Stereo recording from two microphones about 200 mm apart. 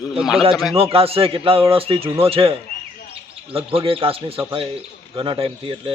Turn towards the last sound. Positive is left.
turn(degrees=-25)  # may be behind; listen again after turning